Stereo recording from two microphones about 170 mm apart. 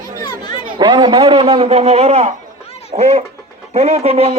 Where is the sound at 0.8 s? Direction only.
25° right (ahead or behind).